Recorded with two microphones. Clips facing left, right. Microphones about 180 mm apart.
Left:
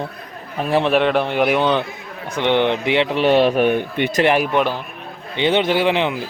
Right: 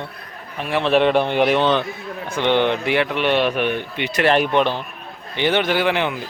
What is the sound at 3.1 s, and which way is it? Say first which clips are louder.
Speech: left 4 dB; 35° left (ahead or behind).